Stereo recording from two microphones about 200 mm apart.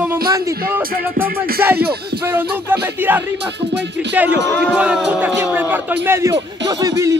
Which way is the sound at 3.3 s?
60° right (ahead or behind).